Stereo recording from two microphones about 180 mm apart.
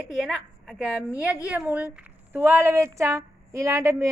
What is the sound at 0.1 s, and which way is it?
A woman's voice, centre (ahead or behind).